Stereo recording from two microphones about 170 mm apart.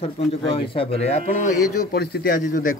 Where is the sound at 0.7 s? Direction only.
35° left (ahead or behind).